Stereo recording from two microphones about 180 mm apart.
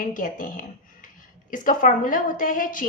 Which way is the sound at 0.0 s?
50° left (ahead or behind).